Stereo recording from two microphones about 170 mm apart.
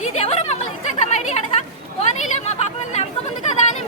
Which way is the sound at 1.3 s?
40° left (ahead or behind).